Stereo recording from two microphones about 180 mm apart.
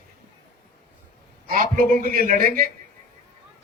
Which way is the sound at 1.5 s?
50° right (ahead or behind).